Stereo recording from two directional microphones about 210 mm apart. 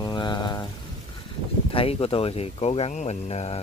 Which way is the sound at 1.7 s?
25° left (ahead or behind).